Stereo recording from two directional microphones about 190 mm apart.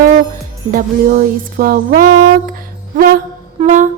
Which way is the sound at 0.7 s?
45° right (ahead or behind).